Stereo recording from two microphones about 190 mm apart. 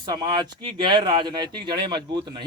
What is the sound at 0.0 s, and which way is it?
A man's voice, 25° right (ahead or behind).